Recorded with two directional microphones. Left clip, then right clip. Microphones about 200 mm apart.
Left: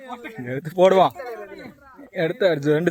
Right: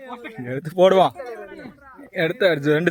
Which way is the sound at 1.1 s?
35° left (ahead or behind).